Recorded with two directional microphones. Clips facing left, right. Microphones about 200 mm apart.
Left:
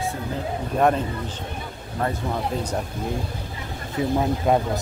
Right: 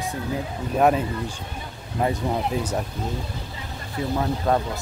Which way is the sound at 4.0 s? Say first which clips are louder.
Left 3 dB; 20° left (ahead or behind).